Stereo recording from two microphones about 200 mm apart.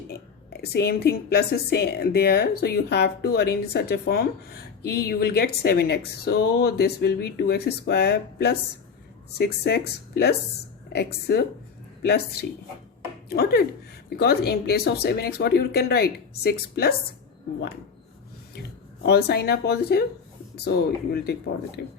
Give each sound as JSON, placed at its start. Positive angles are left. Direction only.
{"t": 0.5, "sound": "a woman's voice", "side_deg": 55}
{"t": 19.0, "sound": "speech", "side_deg": 55}